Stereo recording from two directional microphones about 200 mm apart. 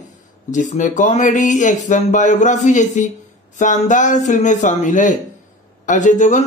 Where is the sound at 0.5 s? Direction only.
35° left (ahead or behind).